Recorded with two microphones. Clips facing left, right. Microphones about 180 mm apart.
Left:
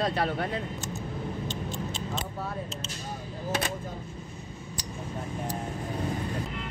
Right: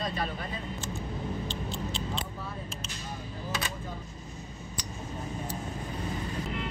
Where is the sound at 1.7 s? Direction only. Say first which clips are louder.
Left 1 dB; 45° left (ahead or behind).